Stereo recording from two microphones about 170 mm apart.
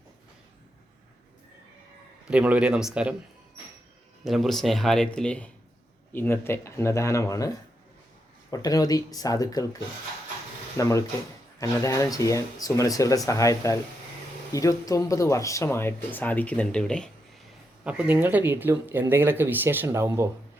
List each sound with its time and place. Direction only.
2.2 s speech: 5° right (ahead or behind)
4.2 s speech: centre (ahead or behind)
17.8 s speech: 5° right (ahead or behind)